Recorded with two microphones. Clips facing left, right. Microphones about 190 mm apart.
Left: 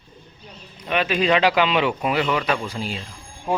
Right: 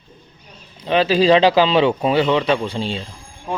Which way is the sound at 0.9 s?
30° right (ahead or behind).